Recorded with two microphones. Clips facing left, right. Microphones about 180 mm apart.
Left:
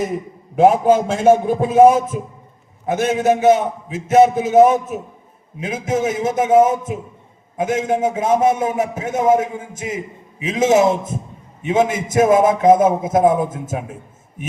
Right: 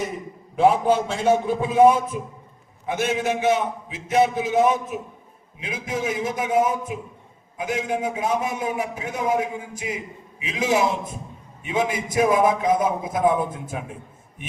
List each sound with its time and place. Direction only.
0.5 s a man's voice: 45° left (ahead or behind)